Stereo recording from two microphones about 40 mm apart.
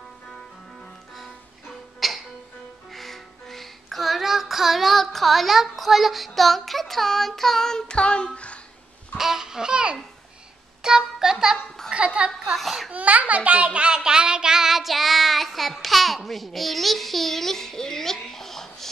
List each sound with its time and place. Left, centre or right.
2.0 s music: centre
7.9 s child singing: left
9.1 s babbling: centre
10.8 s music: centre
11.9 s a sound: right
12.5 s a sound: centre
12.9 s child singing: right; by 18.9 s centre